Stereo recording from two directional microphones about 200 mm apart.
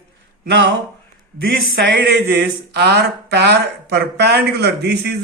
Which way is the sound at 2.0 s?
55° right (ahead or behind).